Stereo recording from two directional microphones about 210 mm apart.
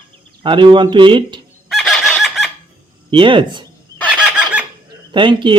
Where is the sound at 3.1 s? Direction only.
25° right (ahead or behind).